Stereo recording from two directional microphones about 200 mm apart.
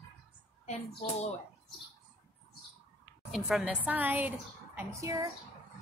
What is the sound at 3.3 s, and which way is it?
A woman's voice, centre (ahead or behind).